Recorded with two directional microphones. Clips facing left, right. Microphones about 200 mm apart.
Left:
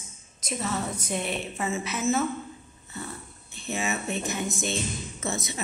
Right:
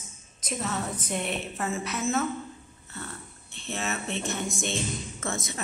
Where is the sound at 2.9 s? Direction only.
10° left (ahead or behind).